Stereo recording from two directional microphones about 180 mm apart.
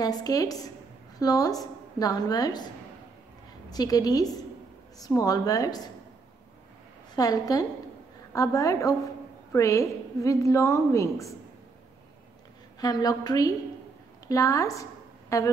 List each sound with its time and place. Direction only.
0.0 s a woman's voice: 20° left (ahead or behind)
3.7 s a woman's voice: 20° left (ahead or behind)
7.2 s a woman's voice: 20° left (ahead or behind)
12.8 s a woman's voice: 20° left (ahead or behind)